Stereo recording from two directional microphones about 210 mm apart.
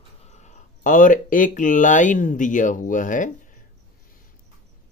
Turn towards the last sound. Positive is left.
turn(degrees=40)  # may be behind; listen again after turning